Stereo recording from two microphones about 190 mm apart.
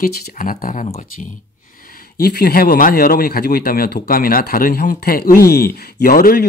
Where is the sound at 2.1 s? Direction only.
55° left (ahead or behind).